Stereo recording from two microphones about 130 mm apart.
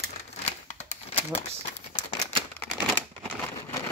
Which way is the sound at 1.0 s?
45° left (ahead or behind).